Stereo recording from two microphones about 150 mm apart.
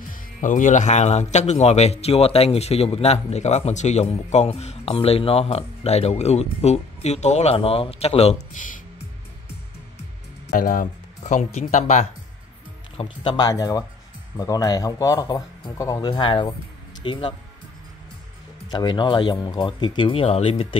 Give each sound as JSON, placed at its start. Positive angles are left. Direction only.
{"t": 0.4, "sound": "a man's voice", "side_deg": 55}
{"t": 10.5, "sound": "a man's voice", "side_deg": 65}
{"t": 12.9, "sound": "speech", "side_deg": 35}
{"t": 18.7, "sound": "speech", "side_deg": 30}